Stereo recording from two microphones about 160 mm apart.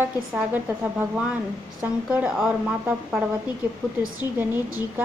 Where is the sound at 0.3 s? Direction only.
10° right (ahead or behind).